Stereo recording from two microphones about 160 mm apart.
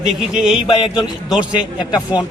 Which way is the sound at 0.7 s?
25° left (ahead or behind).